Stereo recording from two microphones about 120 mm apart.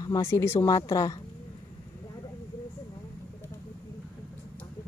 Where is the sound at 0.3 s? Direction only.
25° left (ahead or behind).